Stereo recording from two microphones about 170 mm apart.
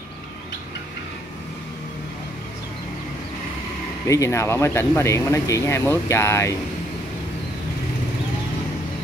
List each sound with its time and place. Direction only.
4.1 s speech: 15° left (ahead or behind)